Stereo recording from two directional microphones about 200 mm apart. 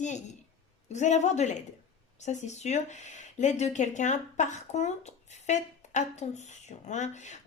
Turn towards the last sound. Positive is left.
turn(degrees=35)  # may be behind; listen again after turning